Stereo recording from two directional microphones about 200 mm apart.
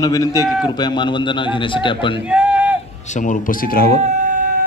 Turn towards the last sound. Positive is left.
turn(degrees=-40)  # may be behind; listen again after turning